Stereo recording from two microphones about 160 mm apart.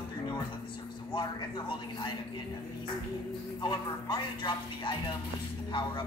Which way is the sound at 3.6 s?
25° left (ahead or behind).